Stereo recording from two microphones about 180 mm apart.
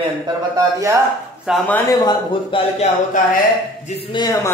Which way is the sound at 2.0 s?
25° left (ahead or behind).